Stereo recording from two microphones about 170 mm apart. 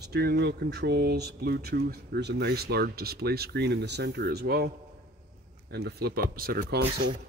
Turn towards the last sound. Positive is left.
turn(degrees=-65)  # may be behind; listen again after turning